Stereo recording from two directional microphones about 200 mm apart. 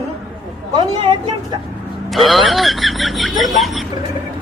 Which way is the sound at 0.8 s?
25° right (ahead or behind).